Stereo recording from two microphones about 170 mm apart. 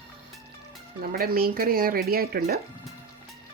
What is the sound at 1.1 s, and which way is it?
Speech, 60° right (ahead or behind).